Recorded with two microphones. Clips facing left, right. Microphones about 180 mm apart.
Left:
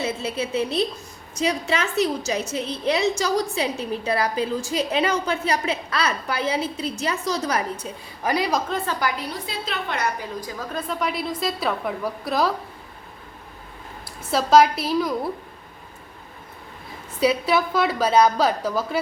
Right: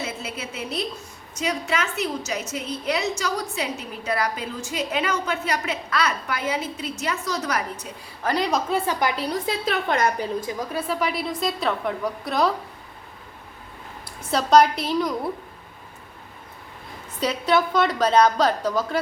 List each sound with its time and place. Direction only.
0.0 s a woman's voice: 30° left (ahead or behind)
8.2 s a woman's voice: 10° left (ahead or behind)
8.4 s a woman's voice: centre (ahead or behind)
8.9 s a woman's voice: 20° right (ahead or behind)
9.5 s a woman's voice: 45° right (ahead or behind)
10.4 s a woman's voice: 10° right (ahead or behind)
14.3 s a woman's voice: 5° left (ahead or behind)
17.2 s a woman's voice: 10° left (ahead or behind)